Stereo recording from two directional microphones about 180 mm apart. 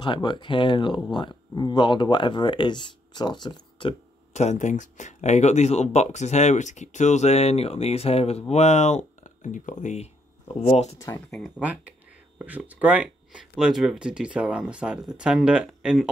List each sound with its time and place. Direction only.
0.0 s speech: 25° left (ahead or behind)
4.3 s speech: 40° left (ahead or behind)
11.2 s speech: centre (ahead or behind)